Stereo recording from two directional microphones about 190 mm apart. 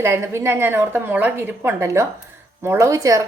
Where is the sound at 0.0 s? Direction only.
15° right (ahead or behind).